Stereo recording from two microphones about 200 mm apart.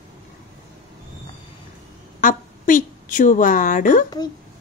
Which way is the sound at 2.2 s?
40° left (ahead or behind).